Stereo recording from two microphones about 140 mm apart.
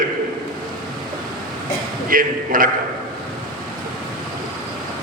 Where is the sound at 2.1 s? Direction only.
80° right.